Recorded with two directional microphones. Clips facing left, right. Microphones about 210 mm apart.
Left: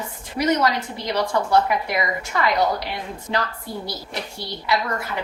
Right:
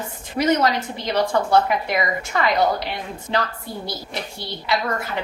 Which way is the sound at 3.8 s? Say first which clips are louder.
Right 1 dB; 25° right (ahead or behind).